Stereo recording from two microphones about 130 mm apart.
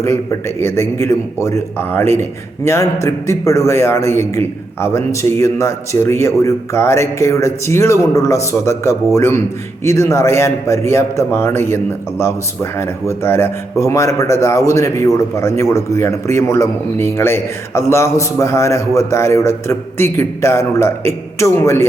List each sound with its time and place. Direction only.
0.0 s a man's voice: 20° left (ahead or behind)